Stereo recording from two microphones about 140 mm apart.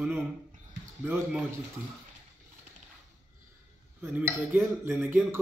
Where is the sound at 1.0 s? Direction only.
10° right (ahead or behind).